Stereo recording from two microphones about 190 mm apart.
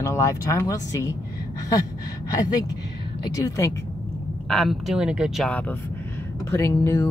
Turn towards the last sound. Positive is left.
turn(degrees=15)  # may be behind; listen again after turning